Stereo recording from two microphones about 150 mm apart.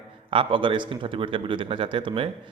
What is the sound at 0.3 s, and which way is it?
A man's voice, 35° right (ahead or behind).